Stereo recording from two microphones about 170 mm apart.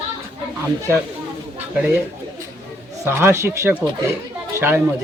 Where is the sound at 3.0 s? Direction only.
15° right (ahead or behind).